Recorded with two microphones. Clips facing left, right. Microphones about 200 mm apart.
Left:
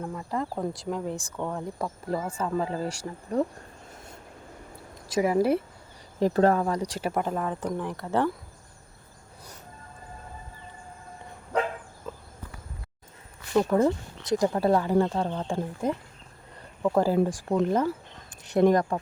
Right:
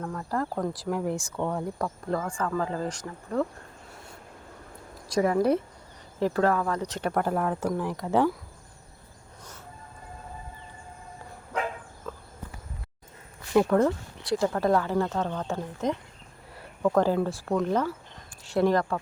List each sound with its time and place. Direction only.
0.0 s speech: 10° left (ahead or behind)
0.7 s speech: 5° right (ahead or behind)
1.4 s speech: centre (ahead or behind)
2.5 s speech: 15° left (ahead or behind)
5.2 s speech: 5° left (ahead or behind)
6.1 s speech: 15° left (ahead or behind)
6.4 s speech: 30° left (ahead or behind)
6.7 s speech: 10° left (ahead or behind); by 8.3 s 10° right (ahead or behind)
13.7 s speech: 10° left (ahead or behind)